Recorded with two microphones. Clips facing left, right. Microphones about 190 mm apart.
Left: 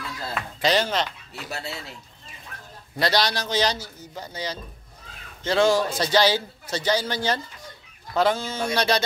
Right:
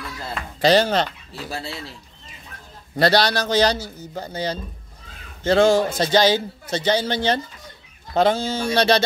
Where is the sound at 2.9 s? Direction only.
60° right (ahead or behind).